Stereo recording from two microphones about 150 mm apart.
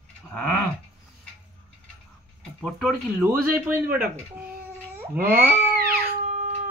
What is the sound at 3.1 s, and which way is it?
Speech, 10° right (ahead or behind).